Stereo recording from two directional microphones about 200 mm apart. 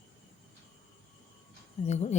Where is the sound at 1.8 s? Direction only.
35° left (ahead or behind).